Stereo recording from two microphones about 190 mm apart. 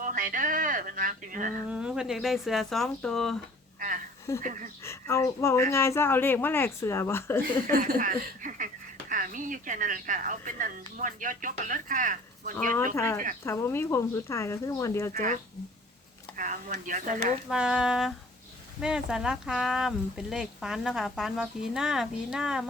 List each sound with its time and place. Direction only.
0.0 s speech: 45° right (ahead or behind)
1.7 s speech: 5° right (ahead or behind)
3.8 s a sound: 45° right (ahead or behind)
4.4 s a woman's voice: 45° right (ahead or behind)
4.9 s speech: 15° left (ahead or behind)
7.7 s a woman's voice: 50° right (ahead or behind)
13.0 s speech: 10° left (ahead or behind)
15.1 s a woman's voice: 45° right (ahead or behind)
16.4 s a woman's voice: 45° right (ahead or behind)
17.5 s speech: 5° right (ahead or behind)